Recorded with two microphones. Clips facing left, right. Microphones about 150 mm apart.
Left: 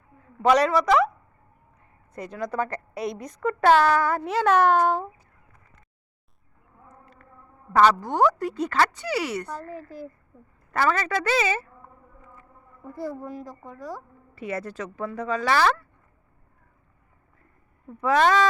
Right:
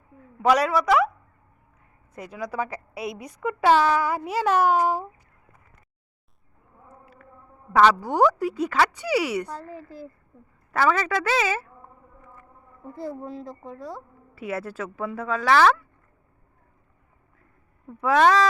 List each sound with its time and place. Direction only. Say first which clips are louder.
0.4 s speech: left 1 dB; 5° right (ahead or behind)
2.1 s speech: left 2 dB; 5° right (ahead or behind)
6.8 s a sound: right 2 dB; 5° right (ahead or behind)
8.0 s speech: right 1 dB; 10° right (ahead or behind)
12.9 s a woman's voice: left 1 dB; 25° right (ahead or behind)
14.3 s speech: right 1 dB; 5° right (ahead or behind)
18.0 s speech: right 1 dB; 5° right (ahead or behind)